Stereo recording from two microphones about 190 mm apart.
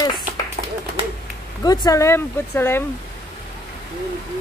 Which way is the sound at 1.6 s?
20° left (ahead or behind).